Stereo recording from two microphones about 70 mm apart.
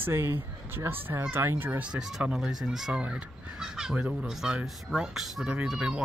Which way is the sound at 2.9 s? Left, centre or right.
Centre.